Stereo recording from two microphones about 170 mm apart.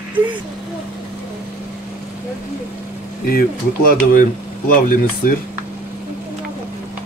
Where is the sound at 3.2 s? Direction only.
60° left (ahead or behind).